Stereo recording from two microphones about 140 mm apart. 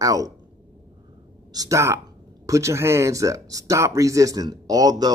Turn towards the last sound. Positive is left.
turn(degrees=-25)  # may be behind; listen again after turning